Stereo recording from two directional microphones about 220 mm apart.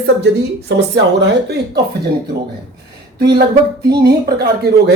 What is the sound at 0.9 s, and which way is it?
Speech, 55° right (ahead or behind).